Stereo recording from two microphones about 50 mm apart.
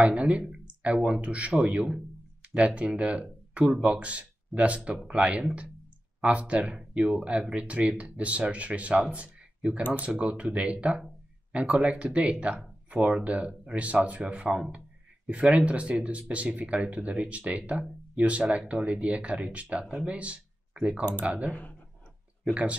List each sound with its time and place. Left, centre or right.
0.0 s speech: right
21.5 s speech: left
22.4 s speech: right